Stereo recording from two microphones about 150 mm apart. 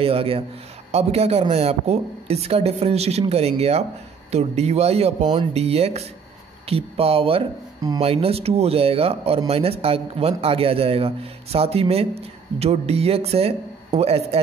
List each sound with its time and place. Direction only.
0.0 s a man's voice: 40° right (ahead or behind)